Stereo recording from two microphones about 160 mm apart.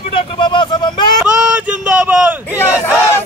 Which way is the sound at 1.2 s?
5° right (ahead or behind).